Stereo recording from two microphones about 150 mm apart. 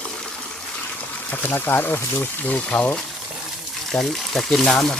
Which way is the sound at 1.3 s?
10° left (ahead or behind).